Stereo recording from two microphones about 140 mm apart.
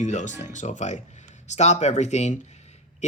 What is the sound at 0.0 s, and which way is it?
Speech, 60° left (ahead or behind).